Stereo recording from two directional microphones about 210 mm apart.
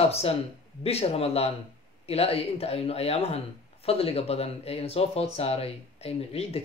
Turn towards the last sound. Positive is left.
turn(degrees=30)  # may be behind; listen again after turning